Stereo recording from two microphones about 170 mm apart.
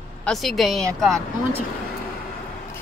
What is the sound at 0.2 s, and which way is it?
Speech, centre (ahead or behind).